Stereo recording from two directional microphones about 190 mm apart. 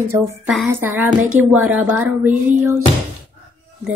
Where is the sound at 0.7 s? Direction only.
10° right (ahead or behind).